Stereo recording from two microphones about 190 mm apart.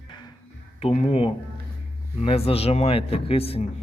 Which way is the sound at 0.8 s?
35° left (ahead or behind).